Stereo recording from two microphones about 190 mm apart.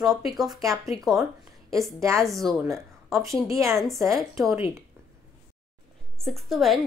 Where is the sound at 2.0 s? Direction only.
15° right (ahead or behind).